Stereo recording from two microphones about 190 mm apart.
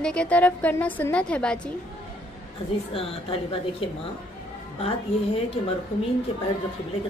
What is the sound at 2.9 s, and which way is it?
Speech, 30° left (ahead or behind).